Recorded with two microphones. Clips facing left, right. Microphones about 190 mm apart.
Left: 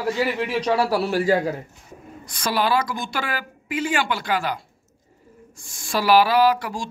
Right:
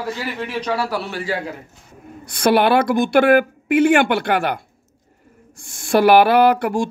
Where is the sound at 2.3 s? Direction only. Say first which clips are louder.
Right 7 dB; 60° right (ahead or behind).